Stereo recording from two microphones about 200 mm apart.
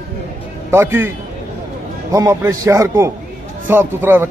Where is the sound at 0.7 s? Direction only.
10° right (ahead or behind).